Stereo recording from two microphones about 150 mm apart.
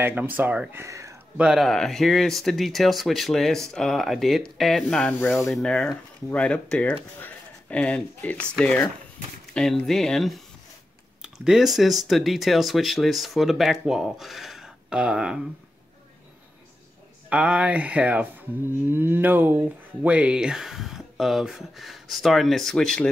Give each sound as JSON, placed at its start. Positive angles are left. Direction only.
{"t": 0.0, "sound": "speech", "side_deg": -10}
{"t": 1.3, "sound": "speech", "side_deg": -5}
{"t": 17.3, "sound": "speech", "side_deg": -5}